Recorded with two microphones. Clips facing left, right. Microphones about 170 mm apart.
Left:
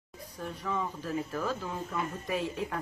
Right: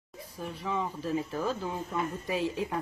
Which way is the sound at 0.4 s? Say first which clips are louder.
Right 1 dB; 5° right (ahead or behind).